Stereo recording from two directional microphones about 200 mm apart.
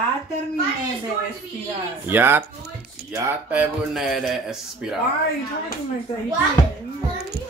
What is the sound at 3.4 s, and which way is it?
Speech, 5° right (ahead or behind).